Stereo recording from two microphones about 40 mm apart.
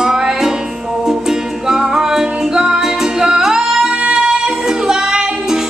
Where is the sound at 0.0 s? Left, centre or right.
Centre.